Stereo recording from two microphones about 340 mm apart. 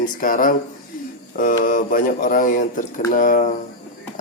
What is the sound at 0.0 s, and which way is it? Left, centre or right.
A man's voice, left.